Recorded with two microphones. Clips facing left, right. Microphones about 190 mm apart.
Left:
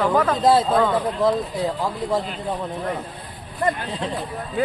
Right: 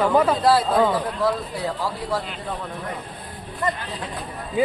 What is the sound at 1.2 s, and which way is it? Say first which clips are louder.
Speech: left 3 dB; 20° left (ahead or behind).